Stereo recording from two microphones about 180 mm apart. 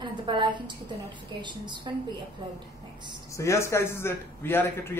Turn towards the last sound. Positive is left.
turn(degrees=10)  # may be behind; listen again after turning